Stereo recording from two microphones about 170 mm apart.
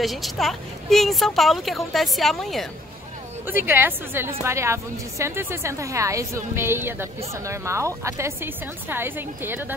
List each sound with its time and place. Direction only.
0.0 s a woman's voice: centre (ahead or behind)
3.4 s a woman's voice: 10° right (ahead or behind)